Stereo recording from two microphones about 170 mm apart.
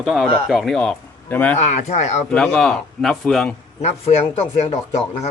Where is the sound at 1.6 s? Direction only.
40° left (ahead or behind).